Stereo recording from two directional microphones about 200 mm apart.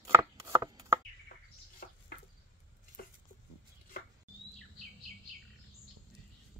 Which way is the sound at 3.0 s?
45° left (ahead or behind).